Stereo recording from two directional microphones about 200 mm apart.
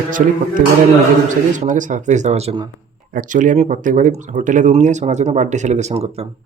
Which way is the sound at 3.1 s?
40° right (ahead or behind).